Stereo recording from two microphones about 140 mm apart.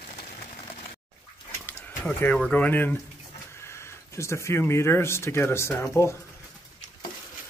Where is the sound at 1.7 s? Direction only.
15° left (ahead or behind).